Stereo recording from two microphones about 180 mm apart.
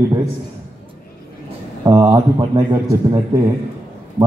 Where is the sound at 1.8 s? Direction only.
20° right (ahead or behind).